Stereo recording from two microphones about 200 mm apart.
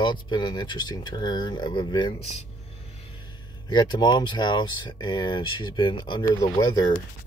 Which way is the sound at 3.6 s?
20° left (ahead or behind).